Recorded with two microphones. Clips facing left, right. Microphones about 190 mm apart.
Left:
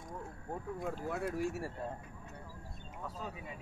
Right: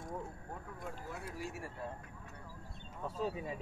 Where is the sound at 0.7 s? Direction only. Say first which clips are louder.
Left 9 dB; 60° left (ahead or behind).